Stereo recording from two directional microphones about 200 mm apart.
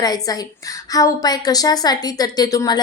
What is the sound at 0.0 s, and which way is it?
A woman's voice, 20° left (ahead or behind).